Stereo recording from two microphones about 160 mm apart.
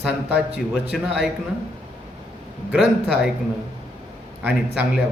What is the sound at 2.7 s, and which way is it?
Speech, 5° right (ahead or behind).